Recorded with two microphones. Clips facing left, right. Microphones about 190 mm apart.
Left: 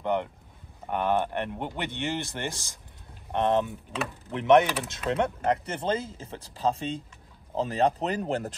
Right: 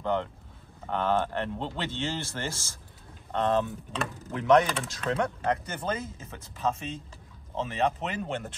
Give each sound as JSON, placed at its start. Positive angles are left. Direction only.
{"t": 0.0, "sound": "speech", "side_deg": 15}